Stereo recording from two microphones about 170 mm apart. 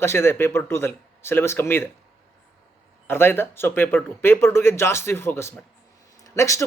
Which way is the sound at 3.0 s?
15° left (ahead or behind).